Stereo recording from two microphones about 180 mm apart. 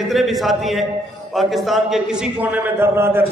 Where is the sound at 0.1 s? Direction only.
Centre (ahead or behind).